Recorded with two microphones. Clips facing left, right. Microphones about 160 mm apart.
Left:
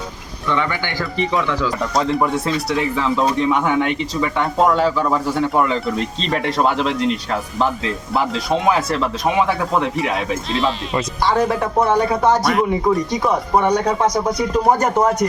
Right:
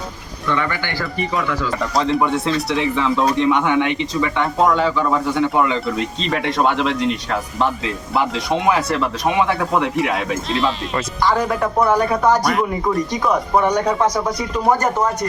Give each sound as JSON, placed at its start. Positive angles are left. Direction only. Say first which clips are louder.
{"t": 0.5, "sound": "speech", "louder": "left 1 dB", "side_deg": 15}
{"t": 2.0, "sound": "speech", "louder": "right 1 dB", "side_deg": 0}
{"t": 11.8, "sound": "speech", "louder": "even", "side_deg": 25}
{"t": 12.5, "sound": "speech", "louder": "left 2 dB", "side_deg": 0}